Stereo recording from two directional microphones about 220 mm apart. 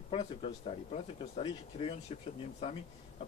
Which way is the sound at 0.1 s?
30° left (ahead or behind).